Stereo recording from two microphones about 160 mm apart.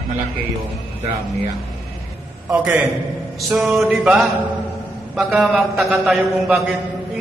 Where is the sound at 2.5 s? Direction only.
10° right (ahead or behind).